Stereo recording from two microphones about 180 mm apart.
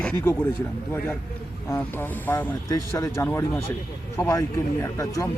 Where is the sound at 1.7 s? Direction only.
10° left (ahead or behind).